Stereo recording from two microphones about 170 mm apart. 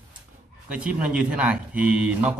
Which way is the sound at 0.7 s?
5° right (ahead or behind).